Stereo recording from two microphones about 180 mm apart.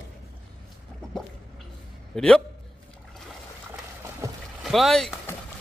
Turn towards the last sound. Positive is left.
turn(degrees=0)  # may be behind; listen again after turning